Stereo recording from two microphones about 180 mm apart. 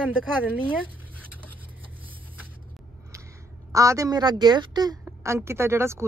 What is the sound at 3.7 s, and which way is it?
A woman's voice, 15° right (ahead or behind).